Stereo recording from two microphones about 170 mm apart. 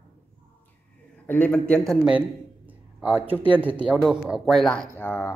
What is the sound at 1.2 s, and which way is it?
Speech, 10° left (ahead or behind).